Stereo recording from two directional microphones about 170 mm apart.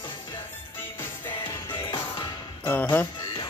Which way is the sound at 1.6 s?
25° left (ahead or behind).